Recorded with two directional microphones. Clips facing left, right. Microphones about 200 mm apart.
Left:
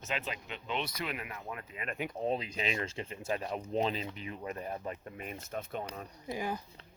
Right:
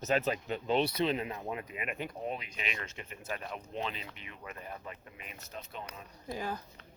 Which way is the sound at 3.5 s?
35° left (ahead or behind).